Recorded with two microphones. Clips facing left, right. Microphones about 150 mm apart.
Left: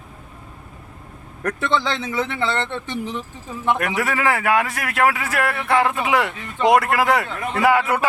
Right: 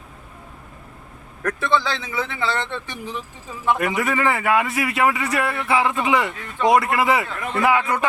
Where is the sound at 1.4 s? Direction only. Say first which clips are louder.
Even; 20° left (ahead or behind).